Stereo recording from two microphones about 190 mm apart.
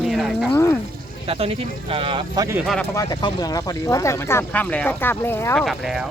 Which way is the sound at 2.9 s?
20° left (ahead or behind).